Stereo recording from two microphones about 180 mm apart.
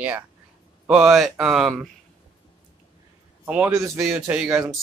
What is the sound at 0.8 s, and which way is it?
Speech, centre (ahead or behind).